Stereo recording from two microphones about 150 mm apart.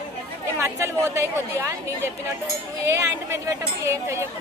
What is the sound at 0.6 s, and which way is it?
Speech, 20° right (ahead or behind).